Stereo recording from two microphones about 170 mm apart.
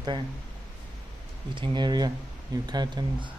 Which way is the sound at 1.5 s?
25° right (ahead or behind).